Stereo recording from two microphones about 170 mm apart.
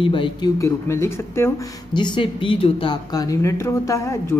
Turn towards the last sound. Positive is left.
turn(degrees=15)  # may be behind; listen again after turning